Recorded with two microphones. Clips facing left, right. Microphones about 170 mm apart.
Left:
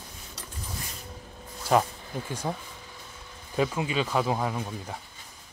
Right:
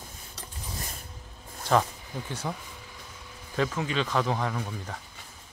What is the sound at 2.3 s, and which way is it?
Speech, 10° left (ahead or behind).